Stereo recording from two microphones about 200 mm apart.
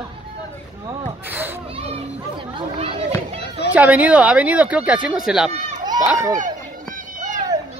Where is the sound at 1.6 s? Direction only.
30° right (ahead or behind).